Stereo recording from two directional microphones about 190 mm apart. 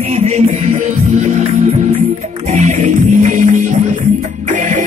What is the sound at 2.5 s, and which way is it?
Music, 40° right (ahead or behind).